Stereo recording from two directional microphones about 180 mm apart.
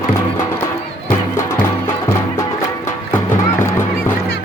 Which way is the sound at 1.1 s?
15° left (ahead or behind).